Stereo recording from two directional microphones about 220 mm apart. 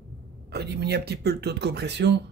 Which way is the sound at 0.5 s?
45° right (ahead or behind).